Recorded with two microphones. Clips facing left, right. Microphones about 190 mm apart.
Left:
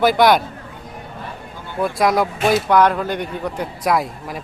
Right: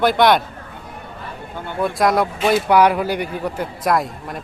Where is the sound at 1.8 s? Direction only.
Centre (ahead or behind).